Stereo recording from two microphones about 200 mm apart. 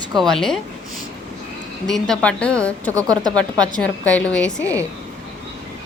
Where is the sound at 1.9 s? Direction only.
5° left (ahead or behind).